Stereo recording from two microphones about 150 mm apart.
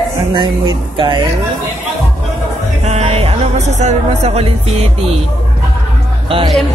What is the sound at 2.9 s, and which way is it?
Speech, 45° right (ahead or behind).